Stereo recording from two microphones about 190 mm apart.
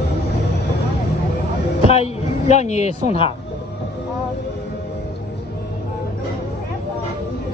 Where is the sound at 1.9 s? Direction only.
35° left (ahead or behind).